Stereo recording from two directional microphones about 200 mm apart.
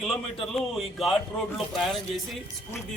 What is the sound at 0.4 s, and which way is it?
Speech, centre (ahead or behind).